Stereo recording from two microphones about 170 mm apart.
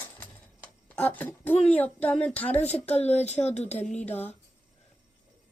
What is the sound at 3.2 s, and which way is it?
Speech, 40° left (ahead or behind).